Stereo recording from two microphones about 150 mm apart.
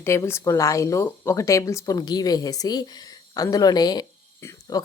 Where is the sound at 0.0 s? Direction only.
20° left (ahead or behind).